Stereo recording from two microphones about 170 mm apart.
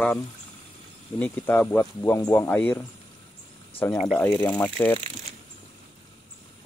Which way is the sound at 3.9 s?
Centre (ahead or behind).